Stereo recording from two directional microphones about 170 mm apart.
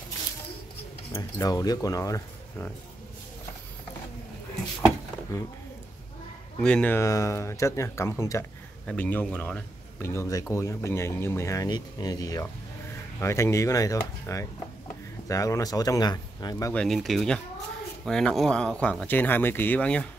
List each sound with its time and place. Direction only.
1.1 s speech: 20° left (ahead or behind)
5.3 s speech: 20° left (ahead or behind)
6.6 s speech: 10° left (ahead or behind)
16.7 s speech: centre (ahead or behind)